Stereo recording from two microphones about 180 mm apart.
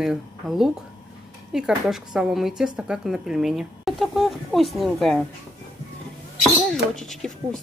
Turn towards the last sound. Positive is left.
turn(degrees=0)  # may be behind; listen again after turning